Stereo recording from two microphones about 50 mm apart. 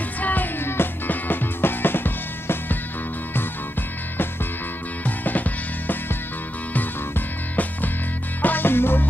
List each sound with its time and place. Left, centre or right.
0.2 s music: left
5.0 s music: left
6.7 s music: left